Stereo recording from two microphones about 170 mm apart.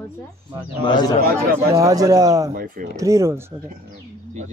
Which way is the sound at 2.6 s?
50° right (ahead or behind).